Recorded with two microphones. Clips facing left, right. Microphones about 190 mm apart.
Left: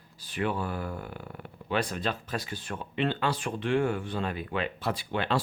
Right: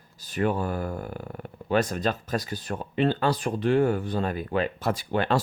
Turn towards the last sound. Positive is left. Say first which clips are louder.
# right 4 dB
turn(degrees=-45)  # may be behind; listen again after turning